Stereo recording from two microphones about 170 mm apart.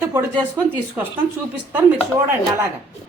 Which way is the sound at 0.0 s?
15° right (ahead or behind).